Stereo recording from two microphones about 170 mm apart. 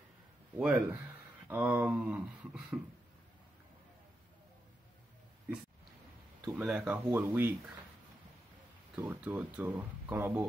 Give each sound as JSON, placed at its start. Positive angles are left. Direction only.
{"t": 0.6, "sound": "speech", "side_deg": -5}
{"t": 6.4, "sound": "speech", "side_deg": -5}
{"t": 8.9, "sound": "speech", "side_deg": -10}